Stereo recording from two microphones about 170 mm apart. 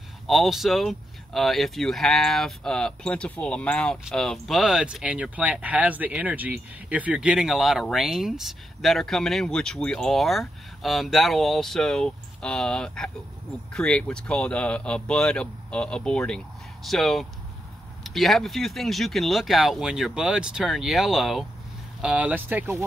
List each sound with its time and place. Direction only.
0.3 s speech: centre (ahead or behind)